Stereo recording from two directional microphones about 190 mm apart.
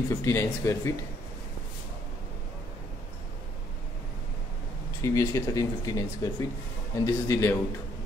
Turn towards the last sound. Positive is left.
turn(degrees=15)  # may be behind; listen again after turning